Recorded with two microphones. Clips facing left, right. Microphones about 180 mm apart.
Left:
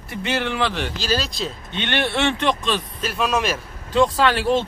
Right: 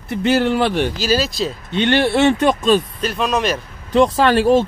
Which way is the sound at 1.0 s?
5° right (ahead or behind).